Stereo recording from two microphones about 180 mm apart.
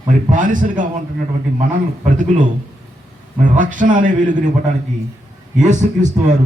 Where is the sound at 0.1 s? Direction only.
45° right (ahead or behind).